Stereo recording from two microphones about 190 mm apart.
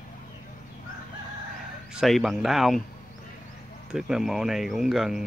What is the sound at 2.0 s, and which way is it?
Speech, centre (ahead or behind).